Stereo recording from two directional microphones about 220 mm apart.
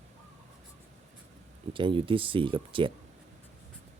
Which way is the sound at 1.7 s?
20° right (ahead or behind).